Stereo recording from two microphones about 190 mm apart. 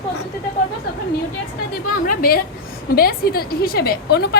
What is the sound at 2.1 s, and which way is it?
A woman's voice, 50° left (ahead or behind).